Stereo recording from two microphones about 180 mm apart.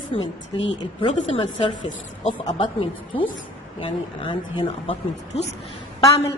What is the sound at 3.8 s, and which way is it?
Speech, 30° left (ahead or behind).